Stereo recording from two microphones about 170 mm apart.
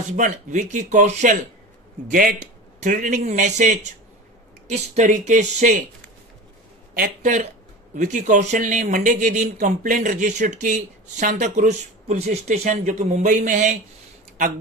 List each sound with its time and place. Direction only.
0.1 s speech: 45° right (ahead or behind)
6.9 s speech: 55° right (ahead or behind)